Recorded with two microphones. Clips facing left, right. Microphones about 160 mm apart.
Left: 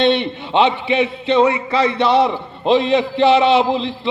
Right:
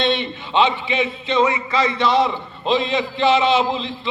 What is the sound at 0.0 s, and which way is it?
A man's voice, 60° left (ahead or behind).